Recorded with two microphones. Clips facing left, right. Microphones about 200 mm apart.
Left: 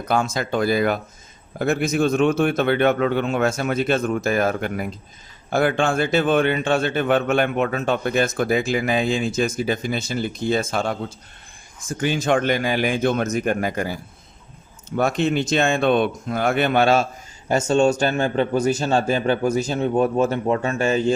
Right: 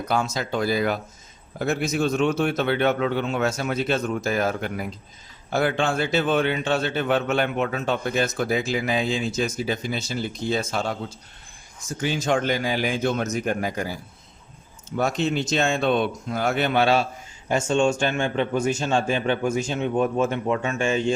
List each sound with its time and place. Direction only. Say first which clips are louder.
0.1 s a man's voice: left 4 dB; 50° left (ahead or behind)
14.9 s a man's voice: left 3 dB; 55° left (ahead or behind); by 21.1 s 40° left (ahead or behind)